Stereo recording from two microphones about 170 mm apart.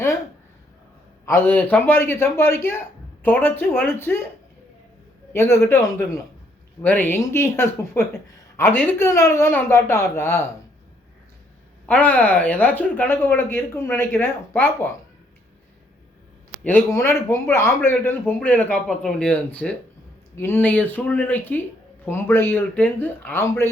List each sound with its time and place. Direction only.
1.2 s speech: 15° left (ahead or behind)
5.3 s speech: 15° left (ahead or behind)
11.9 s speech: 10° left (ahead or behind)
16.9 s speech: 15° left (ahead or behind)